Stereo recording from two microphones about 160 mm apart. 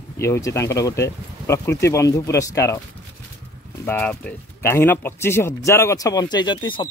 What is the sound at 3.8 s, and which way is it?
Speech, 10° left (ahead or behind).